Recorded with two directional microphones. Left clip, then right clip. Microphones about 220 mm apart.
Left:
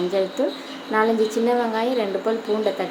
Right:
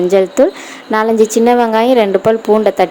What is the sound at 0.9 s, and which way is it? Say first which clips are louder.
A woman's voice: right 8 dB; 45° right (ahead or behind).